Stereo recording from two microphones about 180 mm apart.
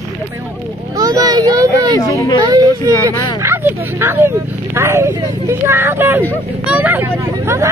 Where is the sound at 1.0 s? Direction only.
20° right (ahead or behind).